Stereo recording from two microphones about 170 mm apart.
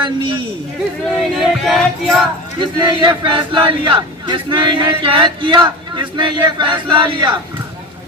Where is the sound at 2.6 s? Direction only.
30° right (ahead or behind).